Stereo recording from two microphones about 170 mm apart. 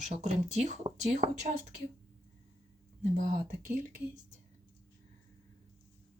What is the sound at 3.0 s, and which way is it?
Speech, 45° right (ahead or behind).